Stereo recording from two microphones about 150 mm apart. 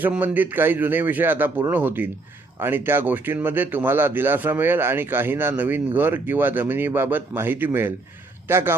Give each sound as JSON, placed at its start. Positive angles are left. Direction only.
{"t": 0.0, "sound": "speech", "side_deg": -10}